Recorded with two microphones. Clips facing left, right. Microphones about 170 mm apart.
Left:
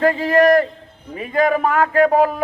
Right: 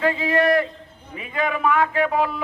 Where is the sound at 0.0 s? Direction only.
40° left (ahead or behind).